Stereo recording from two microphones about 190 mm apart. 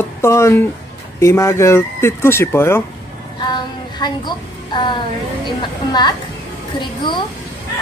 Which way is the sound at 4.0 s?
25° left (ahead or behind).